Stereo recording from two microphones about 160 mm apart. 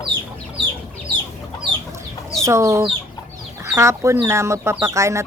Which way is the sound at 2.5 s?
20° right (ahead or behind).